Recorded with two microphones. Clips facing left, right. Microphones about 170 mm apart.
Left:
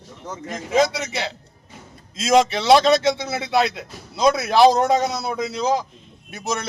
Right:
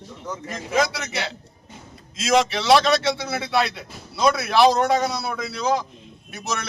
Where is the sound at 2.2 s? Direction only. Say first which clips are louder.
Left 3 dB; 25° left (ahead or behind).